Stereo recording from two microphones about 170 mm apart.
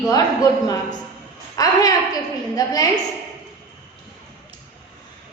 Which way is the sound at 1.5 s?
20° left (ahead or behind).